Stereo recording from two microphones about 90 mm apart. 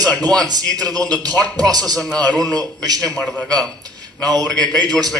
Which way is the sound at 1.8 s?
5° left (ahead or behind).